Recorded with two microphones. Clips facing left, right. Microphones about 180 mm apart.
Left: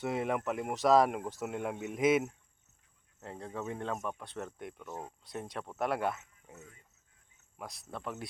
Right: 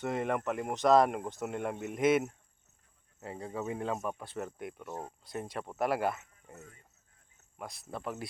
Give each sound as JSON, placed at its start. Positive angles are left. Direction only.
{"t": 0.0, "sound": "speech", "side_deg": 5}
{"t": 6.5, "sound": "speech", "side_deg": -55}
{"t": 7.6, "sound": "speech", "side_deg": 0}